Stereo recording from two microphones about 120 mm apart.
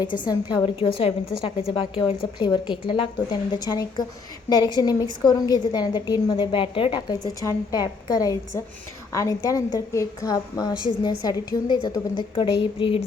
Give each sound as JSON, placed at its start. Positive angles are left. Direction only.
{"t": 0.0, "sound": "a woman's voice", "side_deg": 35}
{"t": 7.1, "sound": "a woman's voice", "side_deg": 35}